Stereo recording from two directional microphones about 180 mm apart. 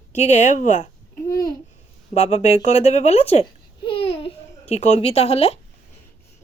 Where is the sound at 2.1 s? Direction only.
35° left (ahead or behind).